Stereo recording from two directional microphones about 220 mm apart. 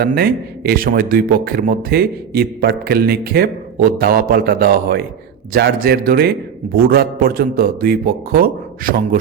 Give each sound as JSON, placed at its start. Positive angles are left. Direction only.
{"t": 0.0, "sound": "a man's voice", "side_deg": -45}